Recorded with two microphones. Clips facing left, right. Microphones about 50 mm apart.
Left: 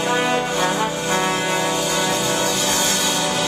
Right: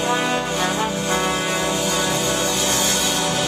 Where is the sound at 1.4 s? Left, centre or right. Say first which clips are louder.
Left 1 dB; centre.